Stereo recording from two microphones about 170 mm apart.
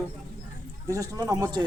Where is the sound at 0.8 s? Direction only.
20° right (ahead or behind).